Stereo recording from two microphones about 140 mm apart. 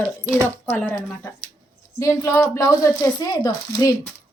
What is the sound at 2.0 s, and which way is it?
Speech, 20° left (ahead or behind).